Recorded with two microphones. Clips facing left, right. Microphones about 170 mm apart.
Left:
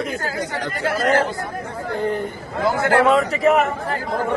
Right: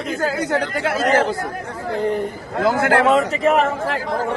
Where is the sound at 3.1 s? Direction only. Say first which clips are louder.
Even; centre (ahead or behind).